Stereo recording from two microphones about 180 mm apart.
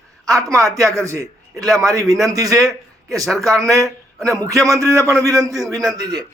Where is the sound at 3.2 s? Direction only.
Centre (ahead or behind).